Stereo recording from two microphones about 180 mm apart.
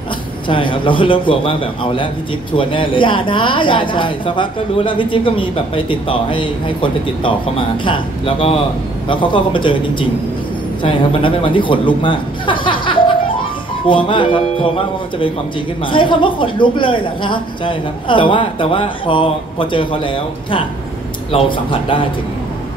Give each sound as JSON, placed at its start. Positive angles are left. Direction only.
{"t": 0.5, "sound": "a woman's voice", "side_deg": 30}
{"t": 21.3, "sound": "a woman's voice", "side_deg": 30}